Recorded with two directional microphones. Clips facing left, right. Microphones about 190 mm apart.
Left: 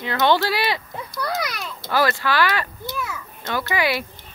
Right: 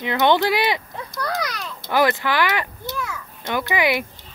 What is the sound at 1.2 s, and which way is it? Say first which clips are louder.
Speech: even; 10° left (ahead or behind).